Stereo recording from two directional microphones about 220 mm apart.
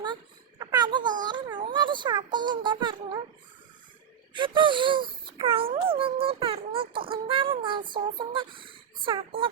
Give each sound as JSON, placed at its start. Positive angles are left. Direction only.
{"t": 0.6, "sound": "a sound", "side_deg": -20}
{"t": 1.2, "sound": "a child's voice", "side_deg": -20}
{"t": 4.4, "sound": "a child's voice", "side_deg": -20}